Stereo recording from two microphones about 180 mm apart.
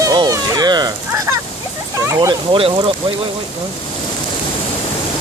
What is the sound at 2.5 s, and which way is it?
Speech, 30° right (ahead or behind).